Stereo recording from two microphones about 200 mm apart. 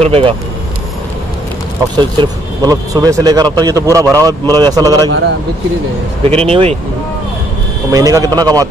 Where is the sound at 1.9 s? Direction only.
20° right (ahead or behind).